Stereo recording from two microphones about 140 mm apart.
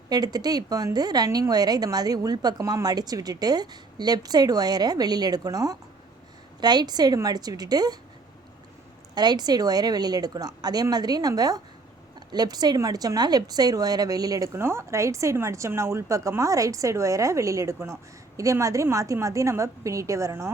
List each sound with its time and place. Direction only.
0.1 s a woman's voice: 30° right (ahead or behind)
9.1 s a woman's voice: 30° right (ahead or behind)